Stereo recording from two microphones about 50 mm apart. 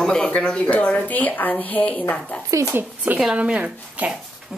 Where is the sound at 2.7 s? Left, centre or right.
Right.